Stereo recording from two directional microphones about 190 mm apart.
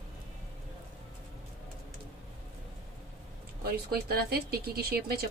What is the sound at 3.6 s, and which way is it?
Speech, 55° right (ahead or behind).